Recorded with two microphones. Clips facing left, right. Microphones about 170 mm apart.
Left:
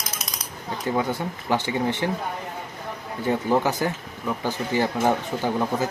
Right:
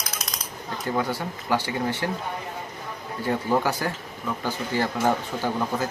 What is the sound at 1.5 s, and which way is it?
Speech, 20° left (ahead or behind).